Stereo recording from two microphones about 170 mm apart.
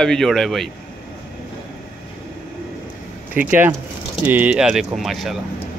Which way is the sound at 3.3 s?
10° right (ahead or behind).